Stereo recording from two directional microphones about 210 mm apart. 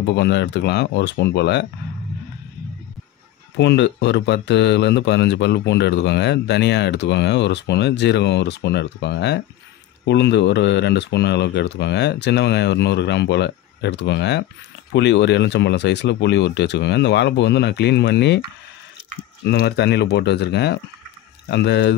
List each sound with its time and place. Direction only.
0.0 s speech: 55° left (ahead or behind)
3.5 s speech: 55° left (ahead or behind)
19.4 s speech: 50° left (ahead or behind)